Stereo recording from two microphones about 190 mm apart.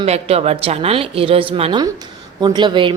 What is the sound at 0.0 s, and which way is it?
A woman's voice, 30° right (ahead or behind).